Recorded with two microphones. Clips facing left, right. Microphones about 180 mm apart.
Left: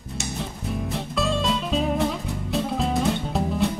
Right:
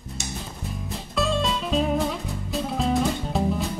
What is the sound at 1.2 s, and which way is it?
Music, centre (ahead or behind).